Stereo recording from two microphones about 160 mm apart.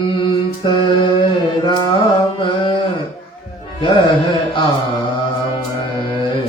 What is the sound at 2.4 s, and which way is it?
Mantra, 30° left (ahead or behind).